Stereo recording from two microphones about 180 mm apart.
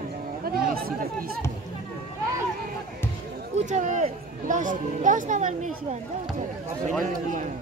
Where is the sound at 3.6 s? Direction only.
45° right (ahead or behind).